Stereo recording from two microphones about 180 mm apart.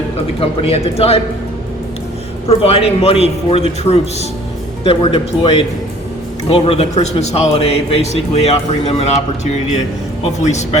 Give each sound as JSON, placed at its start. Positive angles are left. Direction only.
{"t": 0.3, "sound": "a man's voice", "side_deg": 30}
{"t": 2.5, "sound": "a man's voice", "side_deg": 30}